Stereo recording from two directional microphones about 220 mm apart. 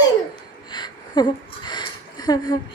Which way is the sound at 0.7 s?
20° left (ahead or behind).